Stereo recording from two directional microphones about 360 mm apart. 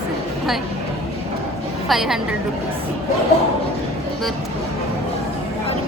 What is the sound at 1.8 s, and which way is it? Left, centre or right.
Speech, centre.